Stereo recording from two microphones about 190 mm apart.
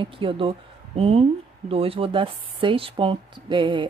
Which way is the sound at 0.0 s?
25° right (ahead or behind).